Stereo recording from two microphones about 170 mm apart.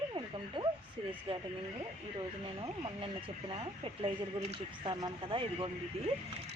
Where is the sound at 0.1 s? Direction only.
25° right (ahead or behind).